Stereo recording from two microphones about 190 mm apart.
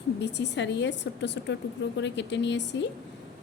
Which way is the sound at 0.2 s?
65° left (ahead or behind).